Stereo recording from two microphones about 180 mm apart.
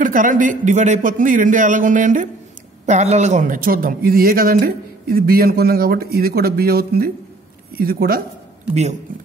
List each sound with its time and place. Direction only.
0.0 s a man's voice: 45° right (ahead or behind)